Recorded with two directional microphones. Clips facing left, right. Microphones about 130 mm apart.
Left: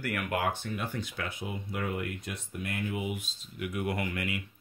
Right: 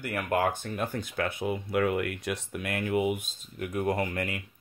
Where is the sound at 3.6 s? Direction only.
40° right (ahead or behind).